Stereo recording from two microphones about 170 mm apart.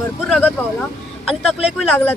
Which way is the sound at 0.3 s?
5° left (ahead or behind).